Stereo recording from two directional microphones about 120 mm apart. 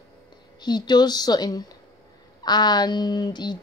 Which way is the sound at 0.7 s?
35° left (ahead or behind).